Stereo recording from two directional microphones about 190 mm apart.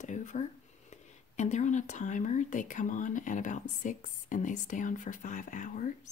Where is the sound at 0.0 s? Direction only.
40° left (ahead or behind).